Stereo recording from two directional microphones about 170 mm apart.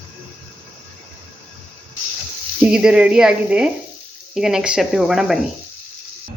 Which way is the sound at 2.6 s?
5° right (ahead or behind).